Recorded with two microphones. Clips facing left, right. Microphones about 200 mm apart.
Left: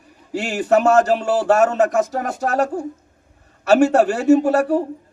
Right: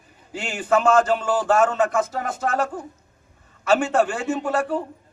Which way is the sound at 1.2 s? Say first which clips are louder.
Left 4 dB; 65° left (ahead or behind).